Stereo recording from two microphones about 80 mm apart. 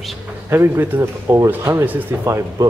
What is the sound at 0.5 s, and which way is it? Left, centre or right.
Speech, right.